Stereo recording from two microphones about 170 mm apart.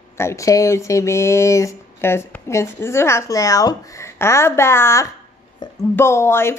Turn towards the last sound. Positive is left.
turn(degrees=15)  # may be behind; listen again after turning